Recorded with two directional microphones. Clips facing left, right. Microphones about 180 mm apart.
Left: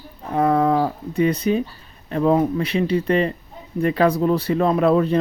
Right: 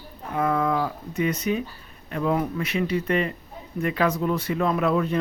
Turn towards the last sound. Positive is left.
turn(degrees=35)  # may be behind; listen again after turning